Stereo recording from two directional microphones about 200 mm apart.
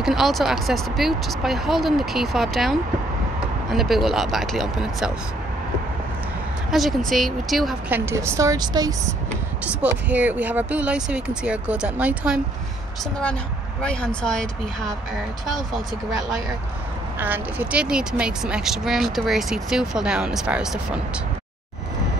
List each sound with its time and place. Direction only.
0.0 s speech: centre (ahead or behind)
6.7 s speech: centre (ahead or behind)
8.0 s speech: 10° right (ahead or behind)
9.7 s speech: 5° right (ahead or behind)
13.8 s speech: 5° left (ahead or behind)
17.2 s speech: 10° right (ahead or behind)